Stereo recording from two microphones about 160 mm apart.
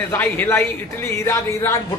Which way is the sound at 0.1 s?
15° left (ahead or behind).